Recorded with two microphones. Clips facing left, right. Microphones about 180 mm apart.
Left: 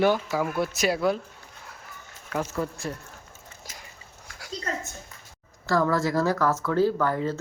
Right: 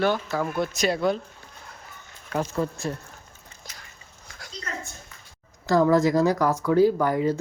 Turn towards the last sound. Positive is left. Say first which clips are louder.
# right 3 dB
turn(degrees=-15)  # may be behind; listen again after turning